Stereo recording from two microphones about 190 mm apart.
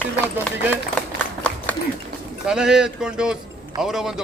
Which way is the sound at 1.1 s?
5° left (ahead or behind).